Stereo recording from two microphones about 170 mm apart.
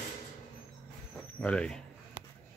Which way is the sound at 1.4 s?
5° left (ahead or behind).